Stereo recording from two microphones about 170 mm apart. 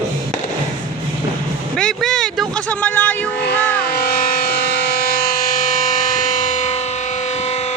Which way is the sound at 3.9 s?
65° left (ahead or behind).